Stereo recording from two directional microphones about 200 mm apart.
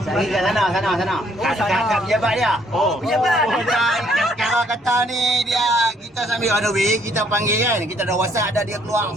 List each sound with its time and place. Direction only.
0.1 s a man's voice: centre (ahead or behind)
6.9 s speech: 15° right (ahead or behind)